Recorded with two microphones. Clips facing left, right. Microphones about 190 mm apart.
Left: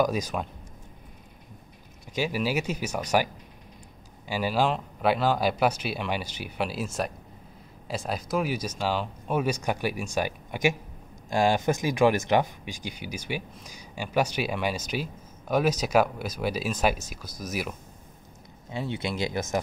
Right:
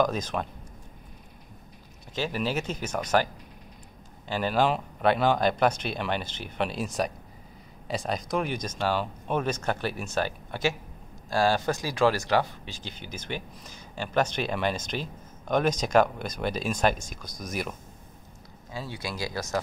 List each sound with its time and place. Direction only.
0.0 s speech: 10° left (ahead or behind)
2.1 s speech: 10° left (ahead or behind)
4.3 s speech: 10° left (ahead or behind)
18.7 s speech: 25° left (ahead or behind)